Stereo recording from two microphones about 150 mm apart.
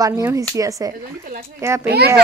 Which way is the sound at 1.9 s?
90° right.